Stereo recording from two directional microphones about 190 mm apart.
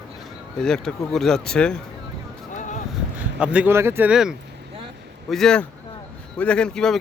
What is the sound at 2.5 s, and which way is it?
Vehicle, 40° left (ahead or behind).